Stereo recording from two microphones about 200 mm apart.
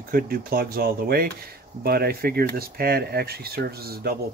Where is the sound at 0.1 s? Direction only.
50° right (ahead or behind).